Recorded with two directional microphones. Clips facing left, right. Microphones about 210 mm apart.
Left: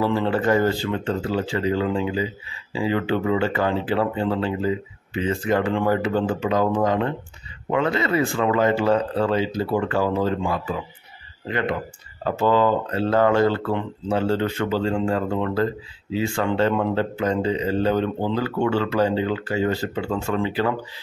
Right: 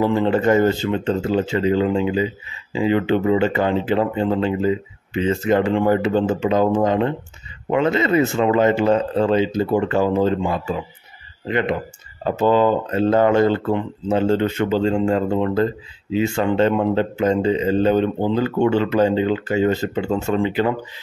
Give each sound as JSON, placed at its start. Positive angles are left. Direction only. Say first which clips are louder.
{"t": 0.0, "sound": "speech", "louder": "right 4 dB", "side_deg": -20}